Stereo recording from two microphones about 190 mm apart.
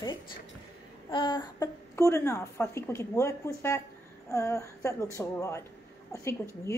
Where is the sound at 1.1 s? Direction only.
25° left (ahead or behind).